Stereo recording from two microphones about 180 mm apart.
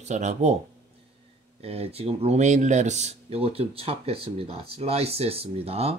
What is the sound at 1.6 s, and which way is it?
Speech, 35° right (ahead or behind).